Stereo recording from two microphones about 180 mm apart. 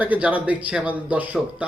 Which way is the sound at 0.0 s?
10° right (ahead or behind).